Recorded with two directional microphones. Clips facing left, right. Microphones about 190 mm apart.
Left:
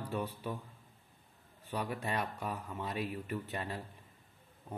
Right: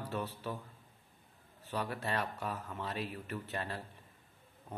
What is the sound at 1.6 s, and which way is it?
Speech, 15° left (ahead or behind).